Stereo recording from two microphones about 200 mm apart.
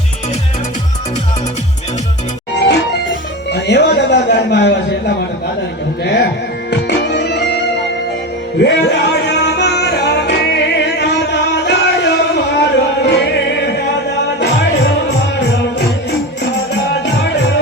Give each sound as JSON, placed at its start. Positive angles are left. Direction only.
{"t": 2.6, "sound": "music", "side_deg": 55}
{"t": 6.7, "sound": "music", "side_deg": 60}